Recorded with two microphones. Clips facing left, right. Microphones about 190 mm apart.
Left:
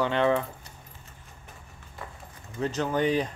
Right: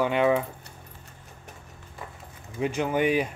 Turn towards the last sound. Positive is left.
turn(degrees=-10)  # may be behind; listen again after turning